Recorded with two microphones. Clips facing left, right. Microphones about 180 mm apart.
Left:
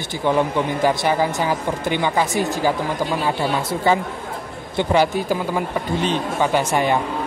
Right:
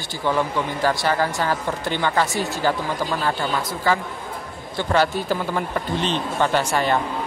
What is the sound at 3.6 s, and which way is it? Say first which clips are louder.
Speech: left 3 dB; 25° left (ahead or behind).